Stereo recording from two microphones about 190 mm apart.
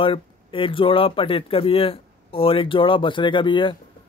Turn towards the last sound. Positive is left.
turn(degrees=25)  # may be behind; listen again after turning